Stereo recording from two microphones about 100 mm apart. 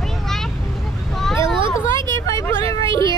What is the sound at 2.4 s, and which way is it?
Speech, 30° left (ahead or behind).